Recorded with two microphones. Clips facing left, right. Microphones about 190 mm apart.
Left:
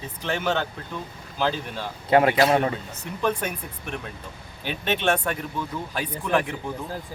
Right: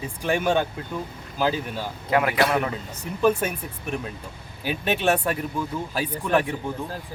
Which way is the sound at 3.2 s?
10° right (ahead or behind).